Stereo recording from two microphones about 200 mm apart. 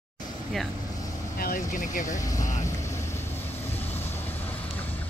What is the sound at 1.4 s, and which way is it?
Speech, 40° left (ahead or behind).